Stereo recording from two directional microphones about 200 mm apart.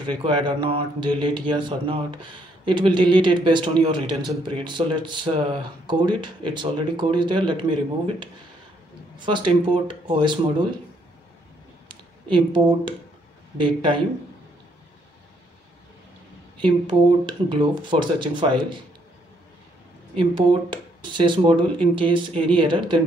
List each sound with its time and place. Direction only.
0.0 s speech: 25° right (ahead or behind)
9.2 s speech: 25° right (ahead or behind)
11.9 s speech: 25° right (ahead or behind)
16.6 s speech: 25° right (ahead or behind)
20.2 s speech: 25° right (ahead or behind)